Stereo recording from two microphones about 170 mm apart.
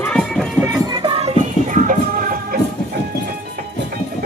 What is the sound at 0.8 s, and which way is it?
Music, 25° right (ahead or behind).